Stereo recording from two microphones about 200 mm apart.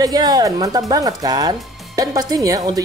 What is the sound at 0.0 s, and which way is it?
Speech, 20° right (ahead or behind).